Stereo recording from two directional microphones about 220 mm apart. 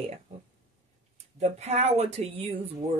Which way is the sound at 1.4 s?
30° right (ahead or behind).